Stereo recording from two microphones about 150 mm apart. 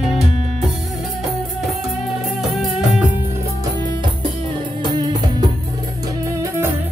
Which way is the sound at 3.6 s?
30° right (ahead or behind).